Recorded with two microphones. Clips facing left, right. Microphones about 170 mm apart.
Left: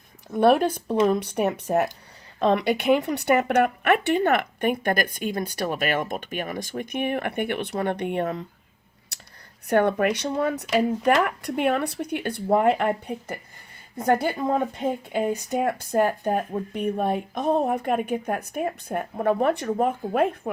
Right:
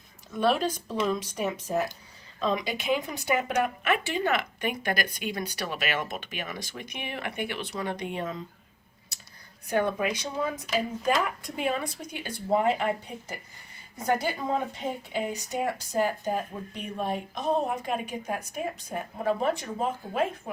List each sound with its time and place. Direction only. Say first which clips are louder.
0.3 s speech: left 7 dB; 55° left (ahead or behind)
9.1 s a sound: left 4 dB; 70° left (ahead or behind)
9.6 s speech: left 6 dB; 65° left (ahead or behind)